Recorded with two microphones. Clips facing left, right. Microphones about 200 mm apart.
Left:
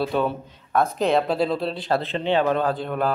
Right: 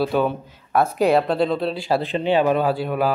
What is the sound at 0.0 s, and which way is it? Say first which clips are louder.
Speech: right 3 dB; 5° right (ahead or behind).